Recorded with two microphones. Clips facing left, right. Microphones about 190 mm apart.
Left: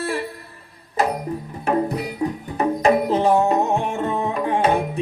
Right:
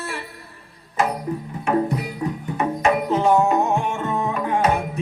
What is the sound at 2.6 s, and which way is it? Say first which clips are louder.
Music: left 3 dB; 35° left (ahead or behind).